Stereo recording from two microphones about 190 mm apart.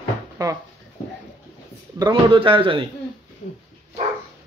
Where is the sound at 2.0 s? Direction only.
25° right (ahead or behind).